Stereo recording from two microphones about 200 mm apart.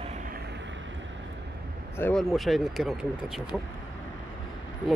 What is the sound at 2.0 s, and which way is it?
Speech, 5° left (ahead or behind).